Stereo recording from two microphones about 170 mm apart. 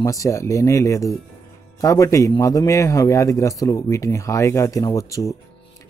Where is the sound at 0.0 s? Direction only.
20° left (ahead or behind).